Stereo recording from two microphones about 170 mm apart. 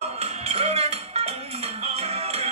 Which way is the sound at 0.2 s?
35° right (ahead or behind).